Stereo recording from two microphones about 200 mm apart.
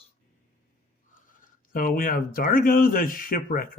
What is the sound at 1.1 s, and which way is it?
Speech, 45° left (ahead or behind).